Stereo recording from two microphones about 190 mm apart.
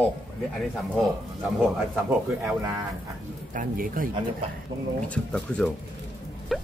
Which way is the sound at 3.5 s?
45° right (ahead or behind).